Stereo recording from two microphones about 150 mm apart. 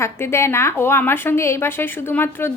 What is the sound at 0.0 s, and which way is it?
A woman's voice, 20° left (ahead or behind).